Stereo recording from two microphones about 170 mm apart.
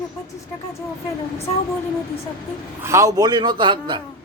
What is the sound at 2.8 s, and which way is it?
A man's voice, 15° right (ahead or behind).